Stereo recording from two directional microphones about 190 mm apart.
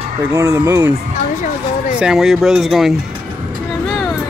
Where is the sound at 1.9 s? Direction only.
5° right (ahead or behind).